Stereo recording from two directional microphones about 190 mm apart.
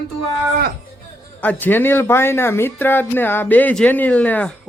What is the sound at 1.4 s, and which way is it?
Speech, 10° left (ahead or behind).